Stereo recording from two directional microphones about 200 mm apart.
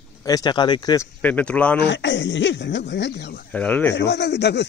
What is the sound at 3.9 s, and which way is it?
Speech, 60° left (ahead or behind).